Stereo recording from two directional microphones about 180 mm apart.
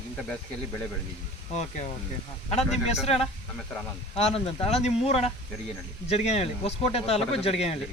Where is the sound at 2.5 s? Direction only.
35° left (ahead or behind).